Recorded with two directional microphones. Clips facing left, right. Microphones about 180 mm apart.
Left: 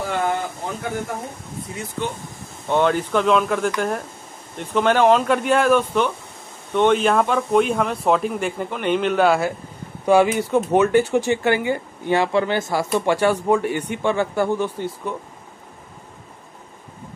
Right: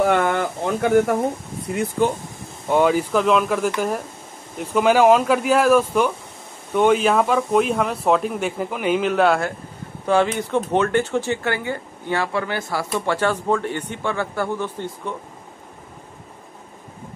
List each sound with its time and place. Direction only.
0.0 s speech: 70° right (ahead or behind)
1.7 s speech: 60° right (ahead or behind)
2.7 s speech: 5° right (ahead or behind); by 15.1 s 10° left (ahead or behind)